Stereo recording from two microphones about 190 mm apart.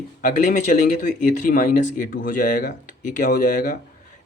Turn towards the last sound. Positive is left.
turn(degrees=45)  # may be behind; listen again after turning